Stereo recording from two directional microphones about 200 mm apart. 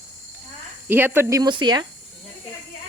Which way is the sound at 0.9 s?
10° right (ahead or behind).